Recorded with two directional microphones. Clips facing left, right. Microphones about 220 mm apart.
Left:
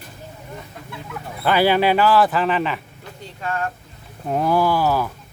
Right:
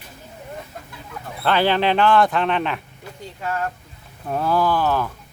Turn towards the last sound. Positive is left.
turn(degrees=10)  # may be behind; listen again after turning